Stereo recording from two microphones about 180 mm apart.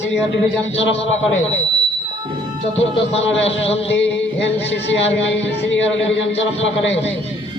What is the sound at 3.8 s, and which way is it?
Music, 90° left.